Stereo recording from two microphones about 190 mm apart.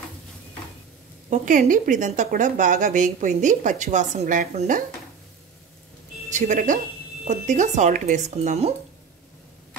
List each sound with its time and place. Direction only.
1.3 s speech: 40° right (ahead or behind)
6.3 s speech: 40° right (ahead or behind)